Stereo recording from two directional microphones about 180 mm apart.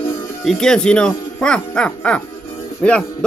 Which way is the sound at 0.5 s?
5° left (ahead or behind).